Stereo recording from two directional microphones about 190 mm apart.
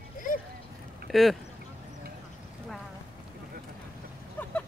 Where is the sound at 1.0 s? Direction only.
Centre (ahead or behind).